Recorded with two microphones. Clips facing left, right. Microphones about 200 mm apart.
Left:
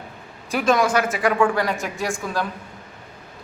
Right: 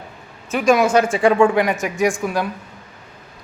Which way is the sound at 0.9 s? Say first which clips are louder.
Right 5 dB; 30° right (ahead or behind).